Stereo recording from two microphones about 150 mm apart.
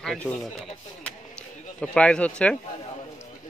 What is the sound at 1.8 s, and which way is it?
Speech, 5° left (ahead or behind).